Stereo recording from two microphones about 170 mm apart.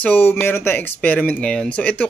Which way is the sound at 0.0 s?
10° left (ahead or behind).